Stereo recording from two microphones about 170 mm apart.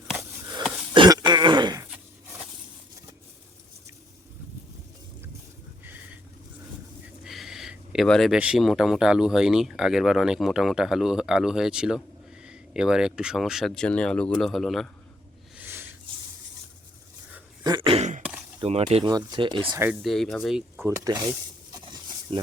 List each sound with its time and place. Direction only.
0.6 s cough: centre (ahead or behind)
0.9 s throat clearing: 25° right (ahead or behind)
1.9 s a sound: 5° right (ahead or behind)
5.8 s a sound: 10° right (ahead or behind)
7.3 s speech: centre (ahead or behind)
15.5 s a sound: 10° right (ahead or behind)
17.6 s throat clearing: 25° right (ahead or behind)
18.6 s speech: 35° right (ahead or behind)
19.0 s speech: 25° right (ahead or behind)
19.9 s speech: centre (ahead or behind)
20.7 s speech: 15° right (ahead or behind)
21.7 s pig: 25° right (ahead or behind)